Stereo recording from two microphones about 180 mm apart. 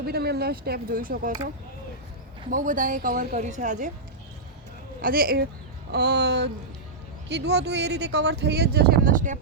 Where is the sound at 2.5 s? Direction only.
45° right (ahead or behind).